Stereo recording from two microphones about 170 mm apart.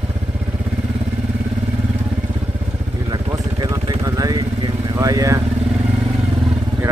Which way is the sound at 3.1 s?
20° right (ahead or behind).